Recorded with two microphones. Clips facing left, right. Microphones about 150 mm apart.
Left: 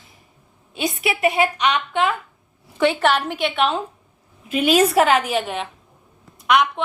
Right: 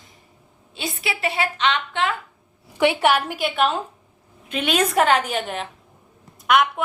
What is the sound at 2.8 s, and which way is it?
A woman's voice, 15° right (ahead or behind).